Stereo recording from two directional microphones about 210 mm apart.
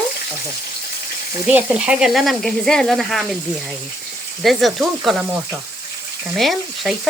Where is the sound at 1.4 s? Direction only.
5° right (ahead or behind).